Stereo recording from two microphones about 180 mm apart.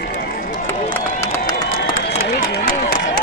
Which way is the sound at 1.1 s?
15° left (ahead or behind).